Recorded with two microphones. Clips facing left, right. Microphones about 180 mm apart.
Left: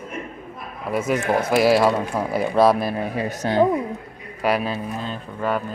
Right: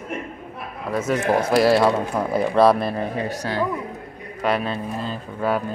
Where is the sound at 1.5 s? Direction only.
Centre (ahead or behind).